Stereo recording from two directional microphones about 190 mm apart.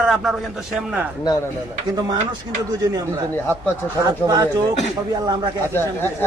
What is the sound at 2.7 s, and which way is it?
Speech, 20° right (ahead or behind).